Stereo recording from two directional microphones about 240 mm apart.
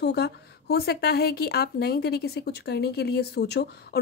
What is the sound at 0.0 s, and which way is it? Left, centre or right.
A woman's voice, left.